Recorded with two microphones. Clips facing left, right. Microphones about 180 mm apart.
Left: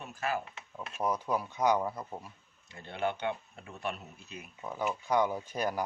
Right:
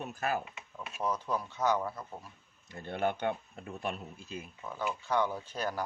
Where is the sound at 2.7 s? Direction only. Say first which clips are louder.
Right 2 dB; 45° right (ahead or behind).